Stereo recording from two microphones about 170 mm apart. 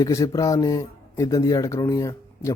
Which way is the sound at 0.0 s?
20° left (ahead or behind).